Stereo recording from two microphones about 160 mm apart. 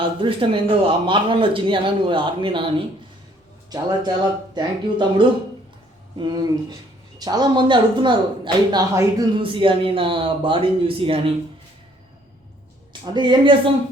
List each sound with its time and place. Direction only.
0.0 s speech: 30° right (ahead or behind)
12.9 s speech: 30° right (ahead or behind)